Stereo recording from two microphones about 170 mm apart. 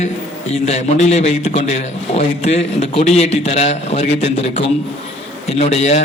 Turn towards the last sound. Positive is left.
turn(degrees=40)  # may be behind; listen again after turning